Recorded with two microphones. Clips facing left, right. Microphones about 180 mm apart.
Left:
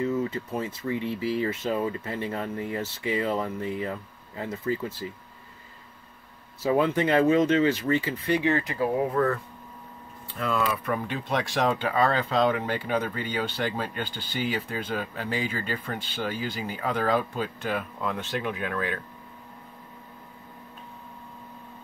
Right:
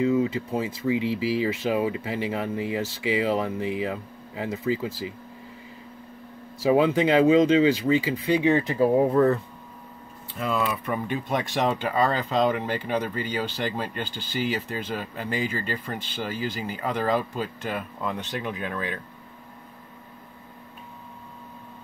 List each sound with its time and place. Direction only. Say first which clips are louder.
0.0 s a sound: right 5 dB; 10° right (ahead or behind)
0.5 s speech: right 4 dB; 10° right (ahead or behind)
0.9 s speech: right 3 dB; 90° right
1.6 s speech: right 3 dB; 10° right (ahead or behind)
2.9 s speech: right 3 dB; 90° right
3.2 s speech: right 3 dB; 10° right (ahead or behind)
6.6 s speech: right 3 dB; 15° right (ahead or behind)
10.3 s speech: right 1 dB; 5° right (ahead or behind)